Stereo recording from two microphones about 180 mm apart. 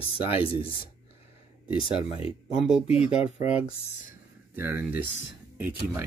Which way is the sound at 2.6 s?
Centre (ahead or behind).